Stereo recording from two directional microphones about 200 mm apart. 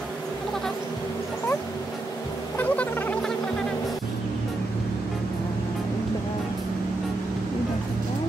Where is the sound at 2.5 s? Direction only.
10° left (ahead or behind).